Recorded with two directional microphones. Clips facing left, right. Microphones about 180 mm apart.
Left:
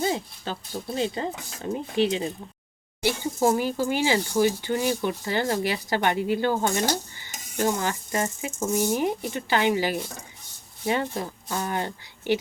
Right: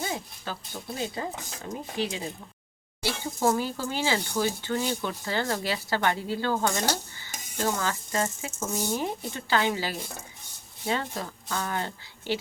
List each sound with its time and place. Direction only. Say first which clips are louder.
0.0 s speech: left 6 dB; 30° left (ahead or behind)